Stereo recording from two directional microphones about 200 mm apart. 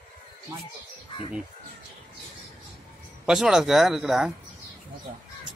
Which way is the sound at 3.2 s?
5° right (ahead or behind).